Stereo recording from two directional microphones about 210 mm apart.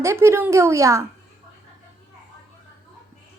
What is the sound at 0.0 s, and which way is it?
A child's voice, 15° right (ahead or behind).